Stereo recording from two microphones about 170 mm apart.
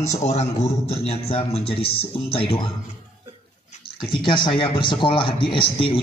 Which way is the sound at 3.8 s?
30° left (ahead or behind).